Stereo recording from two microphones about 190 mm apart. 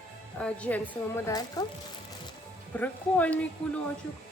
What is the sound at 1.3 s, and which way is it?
Speech, 20° left (ahead or behind).